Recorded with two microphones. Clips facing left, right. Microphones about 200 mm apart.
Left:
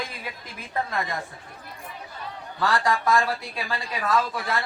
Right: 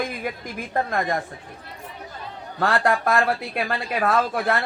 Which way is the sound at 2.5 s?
55° right (ahead or behind).